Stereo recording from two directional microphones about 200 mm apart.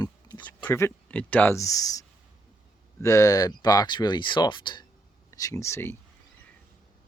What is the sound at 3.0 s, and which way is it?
Speech, 15° left (ahead or behind).